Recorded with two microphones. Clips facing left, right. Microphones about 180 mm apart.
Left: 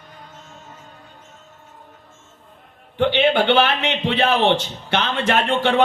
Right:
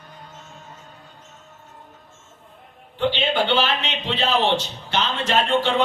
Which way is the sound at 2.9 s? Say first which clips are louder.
Left 5 dB; 60° left (ahead or behind).